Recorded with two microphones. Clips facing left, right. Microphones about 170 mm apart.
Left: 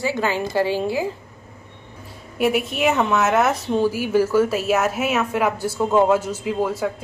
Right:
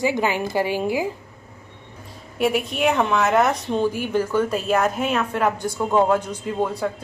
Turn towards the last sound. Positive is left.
turn(degrees=5)  # may be behind; listen again after turning